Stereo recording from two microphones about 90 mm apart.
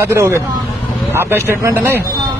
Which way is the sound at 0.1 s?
30° right (ahead or behind).